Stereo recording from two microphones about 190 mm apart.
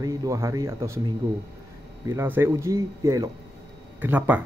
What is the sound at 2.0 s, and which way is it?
A man's voice, 10° right (ahead or behind).